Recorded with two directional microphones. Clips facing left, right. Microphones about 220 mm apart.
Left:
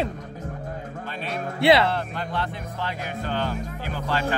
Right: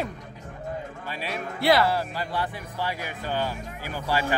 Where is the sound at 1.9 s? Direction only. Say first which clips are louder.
Even; 10° right (ahead or behind).